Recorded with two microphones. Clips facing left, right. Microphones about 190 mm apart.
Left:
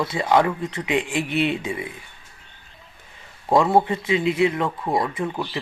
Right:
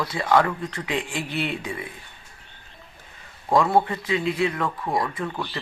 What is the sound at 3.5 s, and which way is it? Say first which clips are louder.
Speech: left 2 dB; 25° left (ahead or behind).